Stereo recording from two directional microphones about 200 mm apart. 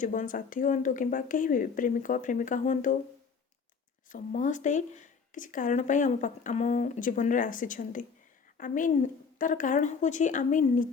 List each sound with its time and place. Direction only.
0.0 s speech: 40° left (ahead or behind)
4.1 s speech: 40° left (ahead or behind)